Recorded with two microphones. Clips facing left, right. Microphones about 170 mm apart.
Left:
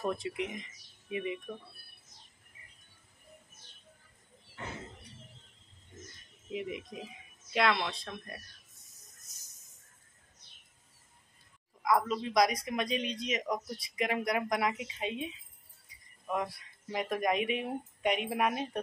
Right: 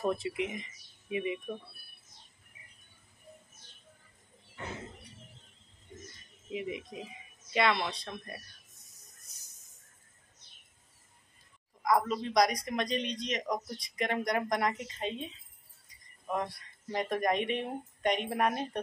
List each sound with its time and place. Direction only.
0.1 s a man's voice: 5° right (ahead or behind)
6.5 s a man's voice: centre (ahead or behind)
11.8 s a man's voice: centre (ahead or behind)